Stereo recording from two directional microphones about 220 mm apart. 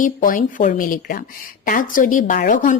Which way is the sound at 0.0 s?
35° left (ahead or behind).